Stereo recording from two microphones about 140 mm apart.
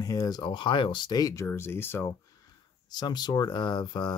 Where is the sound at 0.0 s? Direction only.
25° left (ahead or behind).